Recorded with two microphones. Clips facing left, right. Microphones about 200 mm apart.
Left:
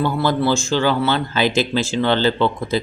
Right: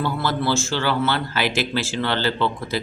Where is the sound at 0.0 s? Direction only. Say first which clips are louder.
Left 5 dB; 15° left (ahead or behind).